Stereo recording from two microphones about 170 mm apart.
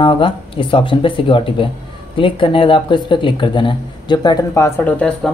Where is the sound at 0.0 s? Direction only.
30° left (ahead or behind).